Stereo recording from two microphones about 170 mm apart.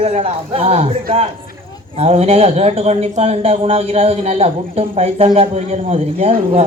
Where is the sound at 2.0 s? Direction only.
35° right (ahead or behind).